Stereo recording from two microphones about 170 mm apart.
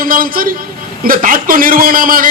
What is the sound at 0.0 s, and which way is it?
Vehicle, 55° right (ahead or behind).